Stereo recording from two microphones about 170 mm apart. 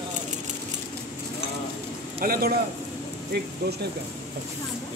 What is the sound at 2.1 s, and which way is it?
Speech, 60° right (ahead or behind).